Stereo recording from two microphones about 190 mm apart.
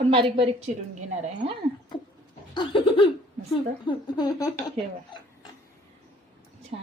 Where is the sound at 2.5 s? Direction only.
25° left (ahead or behind).